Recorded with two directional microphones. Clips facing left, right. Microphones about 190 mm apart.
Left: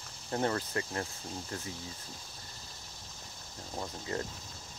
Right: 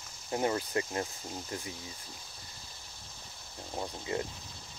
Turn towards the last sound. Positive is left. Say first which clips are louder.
# right 2 dB
turn(degrees=-10)  # may be behind; listen again after turning